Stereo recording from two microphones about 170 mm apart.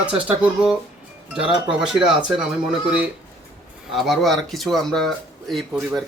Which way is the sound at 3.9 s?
Centre (ahead or behind).